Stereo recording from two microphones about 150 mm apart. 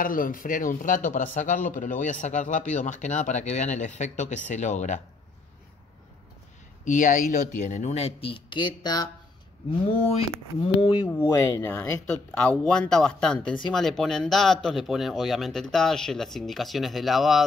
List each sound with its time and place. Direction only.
0.0 s speech: 65° left (ahead or behind)
6.8 s speech: 60° left (ahead or behind); by 9.1 s 30° left (ahead or behind)
9.7 s speech: 40° left (ahead or behind)
11.1 s speech: 20° left (ahead or behind); by 17.4 s centre (ahead or behind)